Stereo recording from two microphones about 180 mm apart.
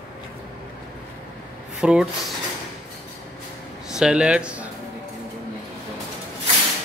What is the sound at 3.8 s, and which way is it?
Speech, 5° right (ahead or behind).